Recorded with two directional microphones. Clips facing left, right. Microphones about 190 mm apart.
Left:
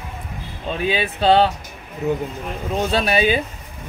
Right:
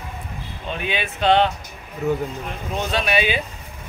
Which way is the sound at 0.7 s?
35° left (ahead or behind).